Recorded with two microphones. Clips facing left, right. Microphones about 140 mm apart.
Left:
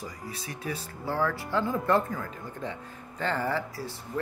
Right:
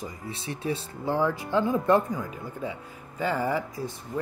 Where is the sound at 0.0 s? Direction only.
25° right (ahead or behind).